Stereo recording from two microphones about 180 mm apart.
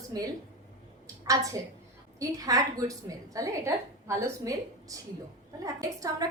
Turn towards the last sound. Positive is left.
turn(degrees=-20)  # may be behind; listen again after turning